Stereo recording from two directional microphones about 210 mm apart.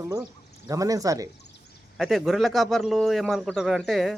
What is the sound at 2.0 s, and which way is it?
Speech, centre (ahead or behind).